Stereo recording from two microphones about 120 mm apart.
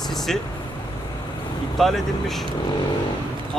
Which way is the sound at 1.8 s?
5° left (ahead or behind).